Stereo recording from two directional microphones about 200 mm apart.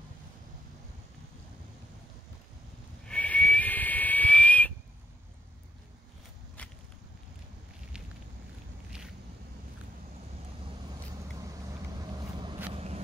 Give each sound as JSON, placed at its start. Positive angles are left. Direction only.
{"t": 3.1, "sound": "whistle", "side_deg": 5}
{"t": 6.6, "sound": "walk", "side_deg": 5}
{"t": 12.0, "sound": "vehicle", "side_deg": -20}
{"t": 12.7, "sound": "a sound", "side_deg": -30}